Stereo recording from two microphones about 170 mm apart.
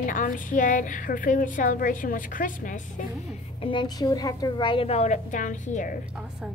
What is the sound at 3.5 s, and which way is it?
A woman's voice, 30° left (ahead or behind).